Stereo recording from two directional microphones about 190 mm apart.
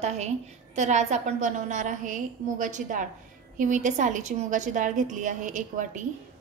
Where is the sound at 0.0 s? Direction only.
35° right (ahead or behind).